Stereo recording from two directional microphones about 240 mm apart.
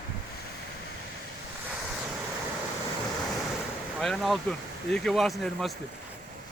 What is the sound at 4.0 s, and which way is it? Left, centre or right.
Speech, centre.